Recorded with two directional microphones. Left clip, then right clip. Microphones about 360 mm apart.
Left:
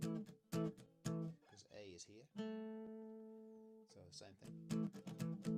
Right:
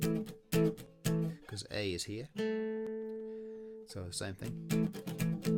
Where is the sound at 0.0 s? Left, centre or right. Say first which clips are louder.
Right 12 dB; left.